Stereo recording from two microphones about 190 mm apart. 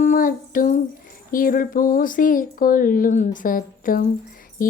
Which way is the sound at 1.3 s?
45° left (ahead or behind).